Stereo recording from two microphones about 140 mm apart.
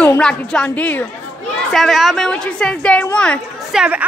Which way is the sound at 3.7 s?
5° right (ahead or behind).